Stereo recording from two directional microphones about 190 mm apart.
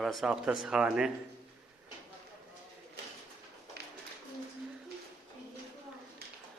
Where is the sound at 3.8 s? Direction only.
60° right (ahead or behind).